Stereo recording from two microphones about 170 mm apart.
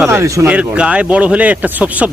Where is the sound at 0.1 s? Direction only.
15° right (ahead or behind).